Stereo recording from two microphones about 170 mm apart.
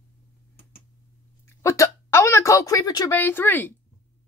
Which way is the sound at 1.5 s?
15° left (ahead or behind).